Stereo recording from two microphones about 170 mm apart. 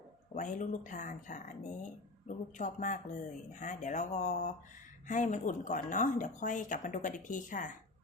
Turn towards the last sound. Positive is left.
turn(degrees=50)  # may be behind; listen again after turning